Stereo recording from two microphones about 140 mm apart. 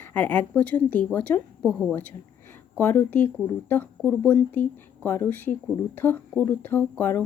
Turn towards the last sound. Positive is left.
turn(degrees=10)  # may be behind; listen again after turning